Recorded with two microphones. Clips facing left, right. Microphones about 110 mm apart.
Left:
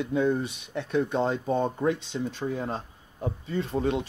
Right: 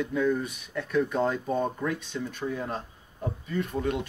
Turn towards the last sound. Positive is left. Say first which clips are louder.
# left 2 dB
turn(degrees=25)  # may be behind; listen again after turning